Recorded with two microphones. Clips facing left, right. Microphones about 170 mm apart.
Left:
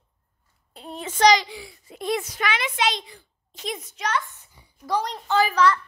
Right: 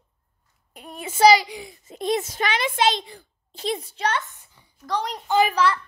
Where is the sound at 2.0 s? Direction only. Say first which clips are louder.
Right 2 dB; 25° right (ahead or behind).